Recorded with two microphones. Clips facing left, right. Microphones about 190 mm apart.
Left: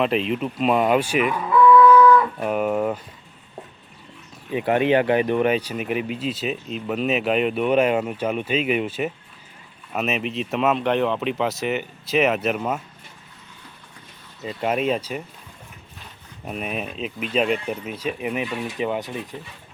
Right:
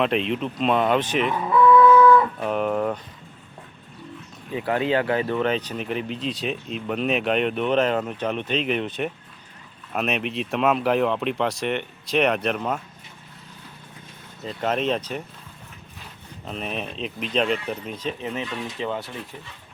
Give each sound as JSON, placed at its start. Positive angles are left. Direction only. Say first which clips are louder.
{"t": 0.0, "sound": "speech", "louder": "left 1 dB", "side_deg": 0}
{"t": 1.5, "sound": "a sound", "louder": "left 1 dB", "side_deg": -25}
{"t": 2.4, "sound": "speech", "louder": "left 1 dB", "side_deg": 5}
{"t": 4.5, "sound": "speech", "louder": "left 4 dB", "side_deg": 20}
{"t": 14.4, "sound": "speech", "louder": "left 2 dB", "side_deg": 10}
{"t": 16.5, "sound": "speech", "louder": "left 2 dB", "side_deg": 10}